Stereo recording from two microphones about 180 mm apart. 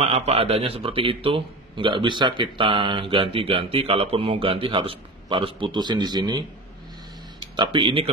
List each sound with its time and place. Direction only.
0.0 s speech: 35° right (ahead or behind)
7.5 s speech: 25° right (ahead or behind)